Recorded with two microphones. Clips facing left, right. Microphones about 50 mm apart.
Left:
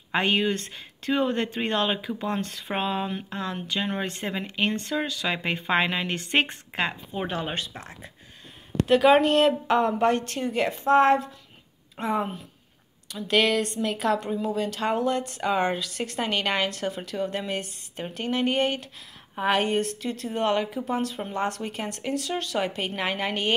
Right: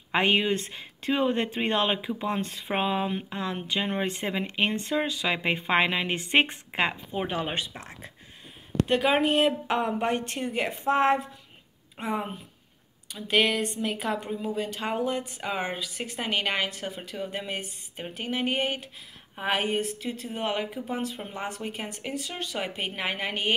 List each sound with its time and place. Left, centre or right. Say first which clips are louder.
0.2 s speech: even; right
8.8 s speech: left 7 dB; centre
9.2 s speech: left 3 dB; centre
13.1 s a woman's voice: left 2 dB; centre